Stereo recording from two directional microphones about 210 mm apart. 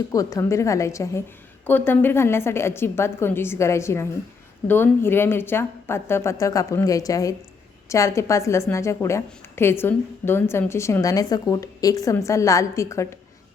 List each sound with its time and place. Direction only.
0.1 s a woman's voice: 15° left (ahead or behind)